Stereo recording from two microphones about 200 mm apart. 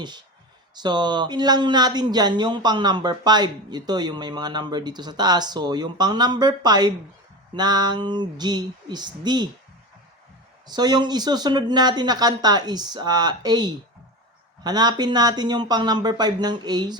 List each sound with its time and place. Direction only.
0.8 s speech: 20° right (ahead or behind)
10.7 s speech: 20° right (ahead or behind)